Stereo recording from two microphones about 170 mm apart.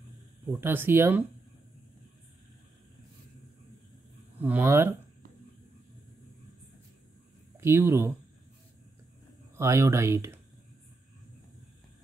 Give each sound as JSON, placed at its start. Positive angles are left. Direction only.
{"t": 0.5, "sound": "speech", "side_deg": -15}
{"t": 4.4, "sound": "speech", "side_deg": -10}
{"t": 7.6, "sound": "speech", "side_deg": -15}
{"t": 9.6, "sound": "speech", "side_deg": -15}